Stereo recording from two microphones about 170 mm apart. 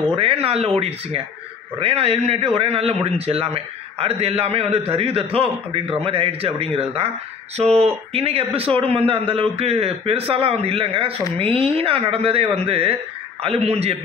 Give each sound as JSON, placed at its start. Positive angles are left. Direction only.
{"t": 0.1, "sound": "a man's voice", "side_deg": -35}